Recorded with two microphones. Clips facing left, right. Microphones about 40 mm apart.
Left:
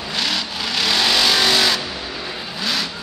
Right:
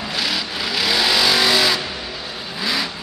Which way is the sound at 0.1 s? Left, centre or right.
Centre.